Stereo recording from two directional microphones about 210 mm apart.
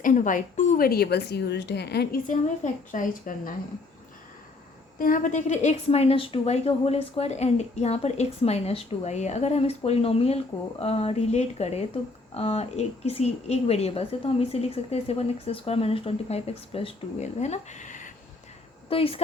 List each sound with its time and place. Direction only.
0.0 s a woman's voice: 40° left (ahead or behind)
4.9 s a woman's voice: 40° left (ahead or behind)
18.9 s a woman's voice: 25° left (ahead or behind)